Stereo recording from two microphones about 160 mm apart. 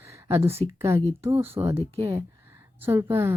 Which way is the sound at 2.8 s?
15° right (ahead or behind).